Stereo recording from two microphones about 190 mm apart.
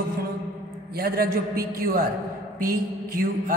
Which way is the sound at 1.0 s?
55° right (ahead or behind).